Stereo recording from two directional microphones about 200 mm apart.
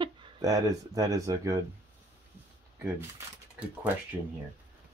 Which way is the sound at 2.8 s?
10° right (ahead or behind).